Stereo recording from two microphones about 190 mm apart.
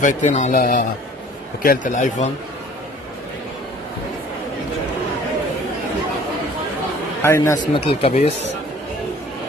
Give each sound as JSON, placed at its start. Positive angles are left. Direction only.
{"t": 0.0, "sound": "speech", "side_deg": 40}
{"t": 7.2, "sound": "a man's voice", "side_deg": 15}
{"t": 7.7, "sound": "speech", "side_deg": 30}